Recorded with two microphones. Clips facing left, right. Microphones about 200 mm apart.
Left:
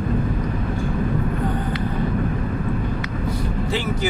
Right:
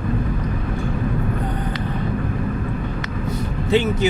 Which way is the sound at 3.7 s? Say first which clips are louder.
Right 8 dB; 20° right (ahead or behind).